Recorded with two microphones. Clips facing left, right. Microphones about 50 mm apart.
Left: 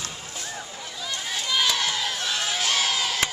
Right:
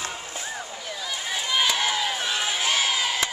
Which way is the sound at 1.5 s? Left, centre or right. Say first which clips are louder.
Right 1 dB; centre.